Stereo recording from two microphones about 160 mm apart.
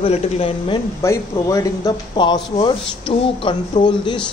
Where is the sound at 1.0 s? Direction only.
20° left (ahead or behind).